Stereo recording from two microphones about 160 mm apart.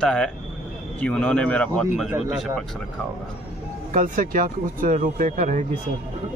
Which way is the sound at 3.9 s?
60° right (ahead or behind).